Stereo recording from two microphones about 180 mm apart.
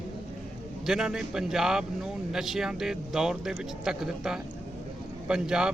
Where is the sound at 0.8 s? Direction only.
Centre (ahead or behind).